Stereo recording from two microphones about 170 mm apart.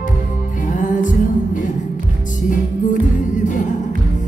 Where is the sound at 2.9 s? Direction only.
50° left (ahead or behind).